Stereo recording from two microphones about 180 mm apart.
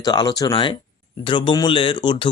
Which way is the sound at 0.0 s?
20° left (ahead or behind).